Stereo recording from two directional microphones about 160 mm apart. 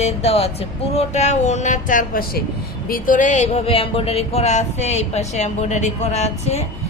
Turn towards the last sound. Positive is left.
turn(degrees=40)  # may be behind; listen again after turning